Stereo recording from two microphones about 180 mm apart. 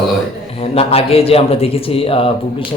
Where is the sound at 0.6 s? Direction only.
35° left (ahead or behind).